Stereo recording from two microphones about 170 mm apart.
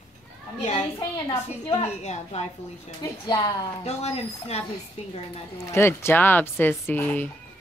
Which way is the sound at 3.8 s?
40° left (ahead or behind).